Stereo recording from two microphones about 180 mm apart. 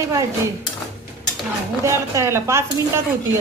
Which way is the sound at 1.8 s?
15° right (ahead or behind).